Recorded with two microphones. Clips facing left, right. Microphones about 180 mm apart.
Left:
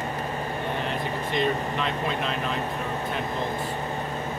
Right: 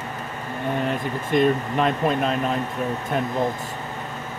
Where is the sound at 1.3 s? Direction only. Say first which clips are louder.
Right 7 dB; 45° right (ahead or behind).